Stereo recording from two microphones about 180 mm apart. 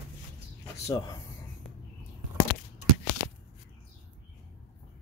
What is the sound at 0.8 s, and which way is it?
Speech, 20° left (ahead or behind).